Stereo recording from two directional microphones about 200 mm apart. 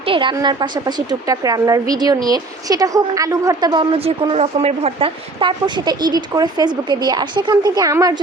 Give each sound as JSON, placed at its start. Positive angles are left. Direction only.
{"t": 0.0, "sound": "a woman's voice", "side_deg": -25}